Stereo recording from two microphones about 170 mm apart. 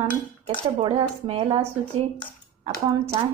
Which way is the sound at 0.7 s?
30° right (ahead or behind).